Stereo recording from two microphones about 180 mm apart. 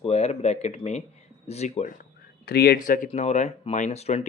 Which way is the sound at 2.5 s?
60° left (ahead or behind).